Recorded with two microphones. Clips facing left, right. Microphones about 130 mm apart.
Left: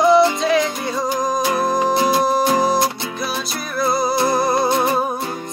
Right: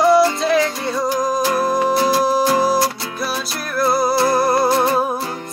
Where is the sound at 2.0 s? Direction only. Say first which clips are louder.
Even; 20° left (ahead or behind).